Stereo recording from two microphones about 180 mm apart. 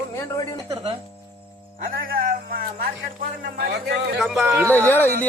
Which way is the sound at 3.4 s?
70° right (ahead or behind).